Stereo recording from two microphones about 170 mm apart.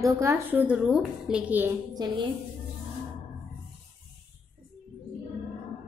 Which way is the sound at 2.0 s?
25° right (ahead or behind).